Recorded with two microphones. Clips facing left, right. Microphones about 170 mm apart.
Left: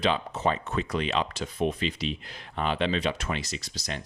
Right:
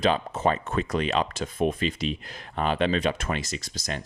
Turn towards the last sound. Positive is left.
turn(degrees=-45)  # may be behind; listen again after turning